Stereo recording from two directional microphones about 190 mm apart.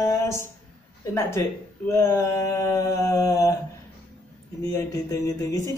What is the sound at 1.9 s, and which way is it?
Mantra, 15° left (ahead or behind).